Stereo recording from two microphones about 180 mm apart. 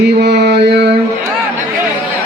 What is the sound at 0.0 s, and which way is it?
Mantra, 70° right (ahead or behind).